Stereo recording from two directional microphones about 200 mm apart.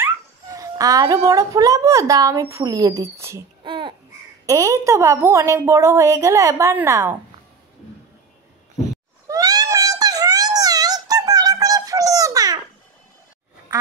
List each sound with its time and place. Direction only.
0.0 s speech: 15° right (ahead or behind)
3.6 s babbling: 25° right (ahead or behind)
4.5 s a woman's voice: 15° right (ahead or behind)
9.3 s a sound: 20° right (ahead or behind)